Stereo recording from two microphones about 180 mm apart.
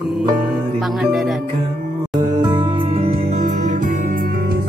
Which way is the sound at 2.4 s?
25° right (ahead or behind).